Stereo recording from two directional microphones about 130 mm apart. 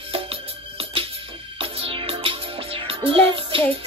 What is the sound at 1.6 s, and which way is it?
Music, 45° right (ahead or behind).